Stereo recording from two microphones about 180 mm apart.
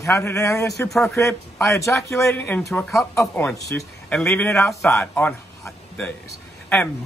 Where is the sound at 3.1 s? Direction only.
15° left (ahead or behind).